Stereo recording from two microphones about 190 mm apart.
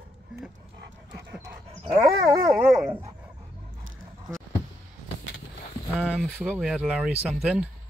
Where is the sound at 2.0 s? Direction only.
20° right (ahead or behind).